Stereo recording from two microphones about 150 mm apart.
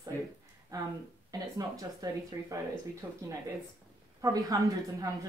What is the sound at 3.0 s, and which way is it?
Speech, 15° right (ahead or behind).